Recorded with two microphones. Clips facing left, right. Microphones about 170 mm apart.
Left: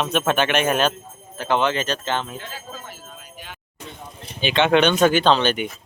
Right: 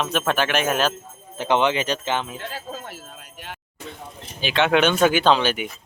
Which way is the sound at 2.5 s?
65° right (ahead or behind).